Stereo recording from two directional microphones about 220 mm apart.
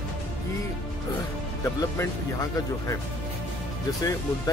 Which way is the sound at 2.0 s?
15° left (ahead or behind).